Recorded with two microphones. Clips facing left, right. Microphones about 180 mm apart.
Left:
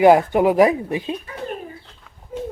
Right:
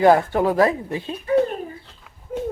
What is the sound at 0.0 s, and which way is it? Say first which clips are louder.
Speech: left 3 dB; 15° left (ahead or behind).